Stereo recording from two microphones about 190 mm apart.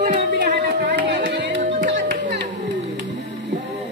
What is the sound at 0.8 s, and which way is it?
Music, 60° right (ahead or behind).